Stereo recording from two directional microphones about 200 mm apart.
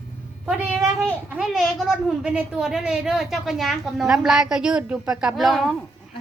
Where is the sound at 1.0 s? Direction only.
Centre (ahead or behind).